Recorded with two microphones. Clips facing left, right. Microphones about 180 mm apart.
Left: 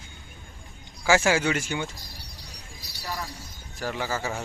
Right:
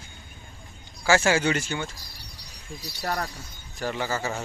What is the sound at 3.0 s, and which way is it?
Speech, 65° right (ahead or behind).